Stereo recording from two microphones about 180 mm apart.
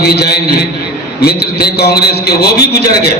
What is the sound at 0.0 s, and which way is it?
A man's voice, 60° left (ahead or behind).